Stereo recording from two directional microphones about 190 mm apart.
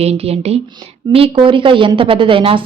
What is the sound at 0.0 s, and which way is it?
A woman's voice, 30° right (ahead or behind).